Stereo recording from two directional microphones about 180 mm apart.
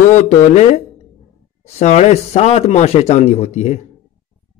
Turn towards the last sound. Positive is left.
turn(degrees=40)  # may be behind; listen again after turning